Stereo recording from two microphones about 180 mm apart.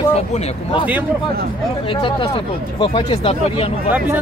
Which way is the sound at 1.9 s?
30° left (ahead or behind).